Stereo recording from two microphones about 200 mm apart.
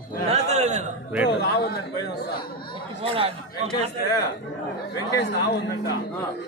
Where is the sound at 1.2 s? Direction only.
60° left (ahead or behind).